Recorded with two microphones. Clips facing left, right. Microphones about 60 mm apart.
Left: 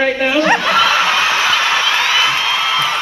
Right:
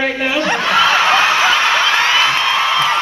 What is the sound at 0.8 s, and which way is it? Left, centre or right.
Snicker, right.